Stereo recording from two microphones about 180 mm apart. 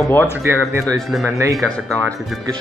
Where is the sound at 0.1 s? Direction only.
10° left (ahead or behind).